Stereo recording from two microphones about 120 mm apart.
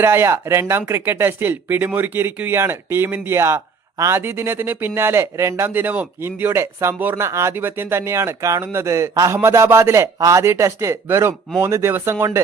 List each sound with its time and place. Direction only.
0.0 s speech: 20° right (ahead or behind)